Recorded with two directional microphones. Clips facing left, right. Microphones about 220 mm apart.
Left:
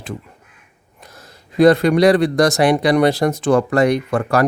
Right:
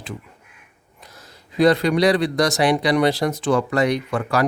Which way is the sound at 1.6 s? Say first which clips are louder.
Left 5 dB; 50° left (ahead or behind).